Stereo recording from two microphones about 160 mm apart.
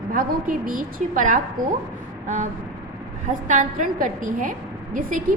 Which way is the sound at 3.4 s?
50° right (ahead or behind).